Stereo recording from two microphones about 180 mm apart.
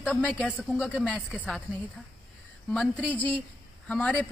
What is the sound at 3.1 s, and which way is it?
A man's voice, 10° left (ahead or behind).